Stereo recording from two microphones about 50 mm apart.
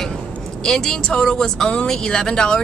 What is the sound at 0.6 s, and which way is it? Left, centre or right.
Speech, centre.